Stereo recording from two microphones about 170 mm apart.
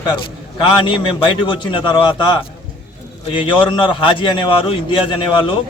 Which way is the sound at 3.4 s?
30° left (ahead or behind).